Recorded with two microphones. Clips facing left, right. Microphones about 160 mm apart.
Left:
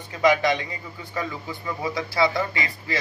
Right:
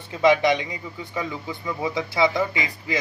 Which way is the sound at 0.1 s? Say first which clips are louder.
Right 2 dB; 20° right (ahead or behind).